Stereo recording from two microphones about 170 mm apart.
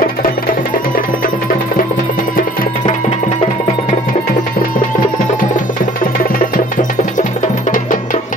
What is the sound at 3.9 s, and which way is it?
Music, 55° left (ahead or behind).